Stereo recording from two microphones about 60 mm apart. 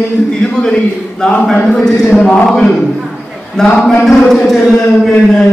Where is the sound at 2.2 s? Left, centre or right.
Left.